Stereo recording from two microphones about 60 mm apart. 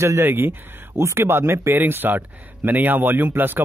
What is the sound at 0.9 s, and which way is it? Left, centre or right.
A man's voice, right.